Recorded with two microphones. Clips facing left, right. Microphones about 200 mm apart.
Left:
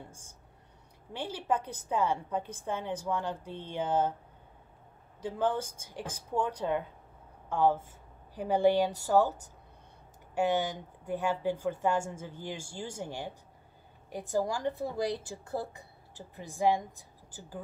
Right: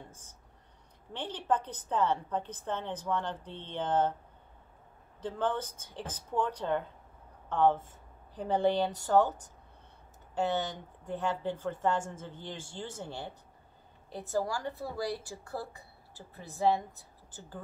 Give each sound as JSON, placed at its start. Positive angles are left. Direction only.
{"t": 0.1, "sound": "speech", "side_deg": 10}
{"t": 5.2, "sound": "a woman's voice", "side_deg": 10}